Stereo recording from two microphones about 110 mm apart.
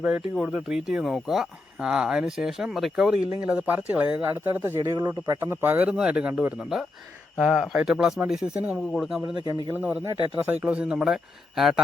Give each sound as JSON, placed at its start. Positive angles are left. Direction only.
{"t": 0.3, "sound": "speech", "side_deg": -5}
{"t": 4.9, "sound": "speech", "side_deg": -35}
{"t": 5.4, "sound": "speech", "side_deg": -20}
{"t": 9.3, "sound": "speech", "side_deg": -40}
{"t": 9.7, "sound": "speech", "side_deg": -15}